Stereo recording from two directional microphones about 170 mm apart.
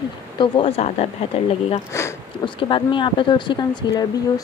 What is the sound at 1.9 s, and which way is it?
Speech, 15° left (ahead or behind).